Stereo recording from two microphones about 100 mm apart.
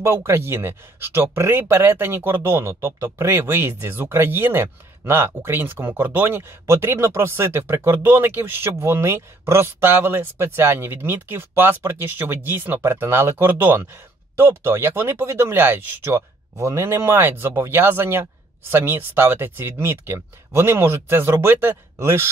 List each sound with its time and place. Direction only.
0.0 s speech: 25° right (ahead or behind)